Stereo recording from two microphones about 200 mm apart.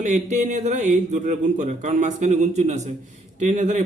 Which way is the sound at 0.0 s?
35° right (ahead or behind).